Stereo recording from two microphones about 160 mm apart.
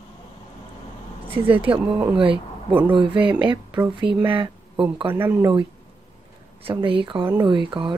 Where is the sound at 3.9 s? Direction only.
30° right (ahead or behind).